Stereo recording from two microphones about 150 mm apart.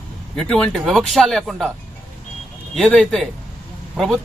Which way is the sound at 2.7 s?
5° left (ahead or behind).